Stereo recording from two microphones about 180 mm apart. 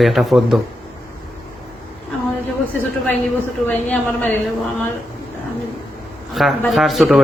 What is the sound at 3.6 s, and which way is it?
Speech, 10° left (ahead or behind).